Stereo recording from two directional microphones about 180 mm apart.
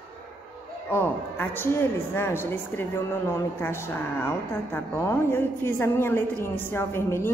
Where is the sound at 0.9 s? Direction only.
10° left (ahead or behind).